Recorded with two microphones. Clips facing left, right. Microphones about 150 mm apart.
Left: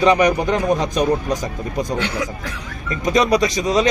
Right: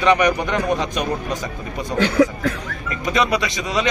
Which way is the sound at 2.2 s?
55° right (ahead or behind).